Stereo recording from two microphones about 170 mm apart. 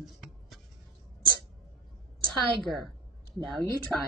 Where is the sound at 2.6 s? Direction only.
Centre (ahead or behind).